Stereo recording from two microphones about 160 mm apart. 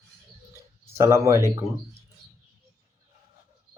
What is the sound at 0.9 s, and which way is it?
Speech, 20° right (ahead or behind).